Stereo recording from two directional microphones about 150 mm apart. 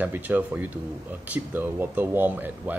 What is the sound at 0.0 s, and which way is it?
Speech, 15° right (ahead or behind).